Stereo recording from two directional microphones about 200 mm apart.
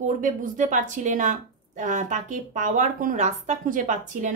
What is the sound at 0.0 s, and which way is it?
A woman's voice, 40° right (ahead or behind).